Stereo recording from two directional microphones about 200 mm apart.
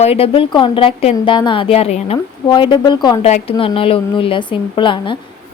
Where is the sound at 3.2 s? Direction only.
35° left (ahead or behind).